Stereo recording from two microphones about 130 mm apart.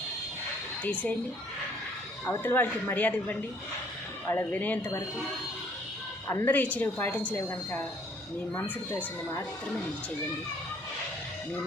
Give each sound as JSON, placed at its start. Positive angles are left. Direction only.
{"t": 0.9, "sound": "speech", "side_deg": 10}
{"t": 2.2, "sound": "speech", "side_deg": 20}
{"t": 6.2, "sound": "speech", "side_deg": 20}